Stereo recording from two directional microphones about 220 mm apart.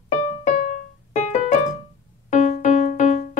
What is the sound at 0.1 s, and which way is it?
Music, 35° left (ahead or behind).